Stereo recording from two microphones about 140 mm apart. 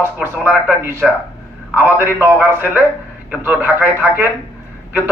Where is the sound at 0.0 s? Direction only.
15° right (ahead or behind).